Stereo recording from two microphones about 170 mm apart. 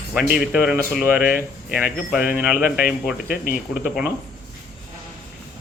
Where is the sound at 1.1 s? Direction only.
60° left (ahead or behind).